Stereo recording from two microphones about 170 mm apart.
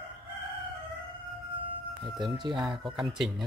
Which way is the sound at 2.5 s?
Centre (ahead or behind).